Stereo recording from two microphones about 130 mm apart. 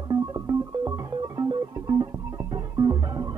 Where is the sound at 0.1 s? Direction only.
30° right (ahead or behind).